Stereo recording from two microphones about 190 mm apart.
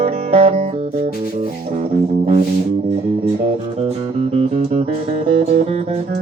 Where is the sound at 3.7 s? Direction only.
30° right (ahead or behind).